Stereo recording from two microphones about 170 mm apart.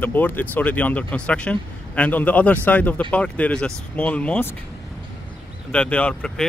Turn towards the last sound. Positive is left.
turn(degrees=5)  # may be behind; listen again after turning